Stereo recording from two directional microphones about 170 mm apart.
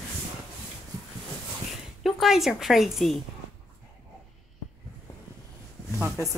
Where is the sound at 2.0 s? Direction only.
Centre (ahead or behind).